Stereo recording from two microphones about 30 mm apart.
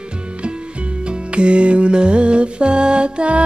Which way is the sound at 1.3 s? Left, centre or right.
Right.